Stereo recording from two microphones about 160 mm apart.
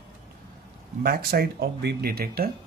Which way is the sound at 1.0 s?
70° right (ahead or behind).